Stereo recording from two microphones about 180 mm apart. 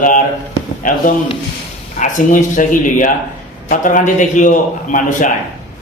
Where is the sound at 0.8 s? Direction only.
50° left (ahead or behind).